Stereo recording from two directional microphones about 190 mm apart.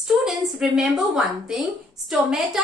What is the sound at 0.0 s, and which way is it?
A woman's voice, centre (ahead or behind).